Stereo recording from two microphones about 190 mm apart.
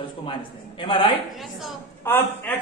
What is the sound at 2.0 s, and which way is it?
Speech, 10° left (ahead or behind).